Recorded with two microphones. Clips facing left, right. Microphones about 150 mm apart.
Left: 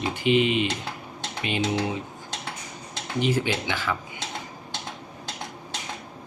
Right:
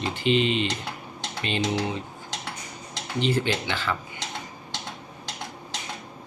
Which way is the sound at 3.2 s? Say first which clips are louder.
Even; 10° left (ahead or behind).